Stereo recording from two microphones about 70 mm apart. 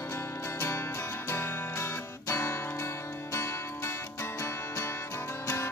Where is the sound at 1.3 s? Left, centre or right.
Left.